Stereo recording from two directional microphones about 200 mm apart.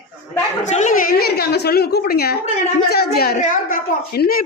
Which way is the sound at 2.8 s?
50° left (ahead or behind).